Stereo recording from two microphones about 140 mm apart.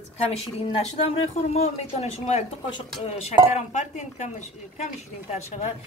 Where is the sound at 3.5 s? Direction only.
55° left (ahead or behind).